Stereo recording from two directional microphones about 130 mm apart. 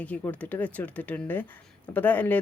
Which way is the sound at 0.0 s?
10° left (ahead or behind).